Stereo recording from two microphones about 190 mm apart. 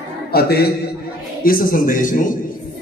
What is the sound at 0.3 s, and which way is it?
A man's voice, 55° left (ahead or behind).